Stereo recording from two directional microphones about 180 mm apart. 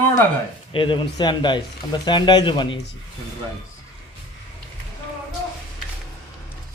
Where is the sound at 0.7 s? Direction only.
30° left (ahead or behind).